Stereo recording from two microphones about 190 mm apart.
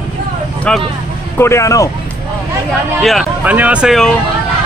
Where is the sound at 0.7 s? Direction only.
5° left (ahead or behind).